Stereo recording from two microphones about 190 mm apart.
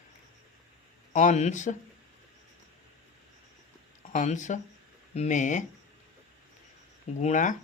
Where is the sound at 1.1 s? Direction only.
40° left (ahead or behind).